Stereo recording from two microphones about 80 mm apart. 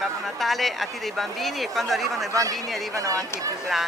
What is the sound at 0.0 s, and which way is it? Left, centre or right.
Speech, centre.